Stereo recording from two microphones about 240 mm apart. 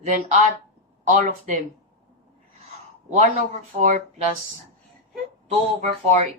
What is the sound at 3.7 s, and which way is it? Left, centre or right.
Speech, right.